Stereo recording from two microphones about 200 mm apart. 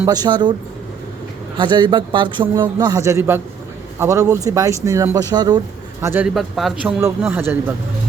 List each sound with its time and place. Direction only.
0.0 s a man's voice: 20° right (ahead or behind)
1.5 s a man's voice: 20° right (ahead or behind)